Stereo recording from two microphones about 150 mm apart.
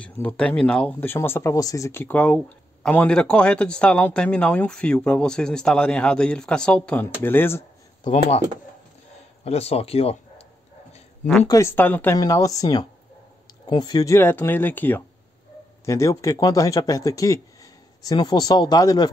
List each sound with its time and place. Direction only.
0.0 s speech: 10° left (ahead or behind)
8.0 s speech: 30° left (ahead or behind)
9.4 s speech: 45° left (ahead or behind)
11.4 s speech: 20° left (ahead or behind)